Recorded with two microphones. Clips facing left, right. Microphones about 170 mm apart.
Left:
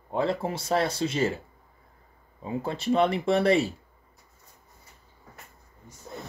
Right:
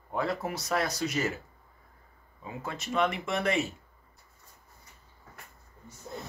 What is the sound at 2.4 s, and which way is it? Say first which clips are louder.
Speech: left 7 dB; 30° left (ahead or behind).